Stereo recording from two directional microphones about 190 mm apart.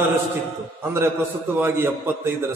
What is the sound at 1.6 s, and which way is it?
Speech, 10° right (ahead or behind).